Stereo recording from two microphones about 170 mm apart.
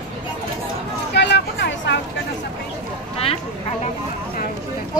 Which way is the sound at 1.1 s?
90° left.